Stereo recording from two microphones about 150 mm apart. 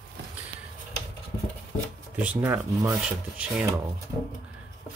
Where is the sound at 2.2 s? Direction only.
10° right (ahead or behind).